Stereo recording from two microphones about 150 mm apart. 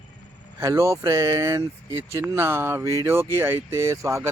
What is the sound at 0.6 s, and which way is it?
Speech, 20° right (ahead or behind).